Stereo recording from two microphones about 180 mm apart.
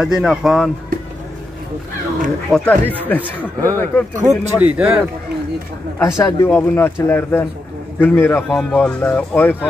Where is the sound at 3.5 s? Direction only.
15° right (ahead or behind).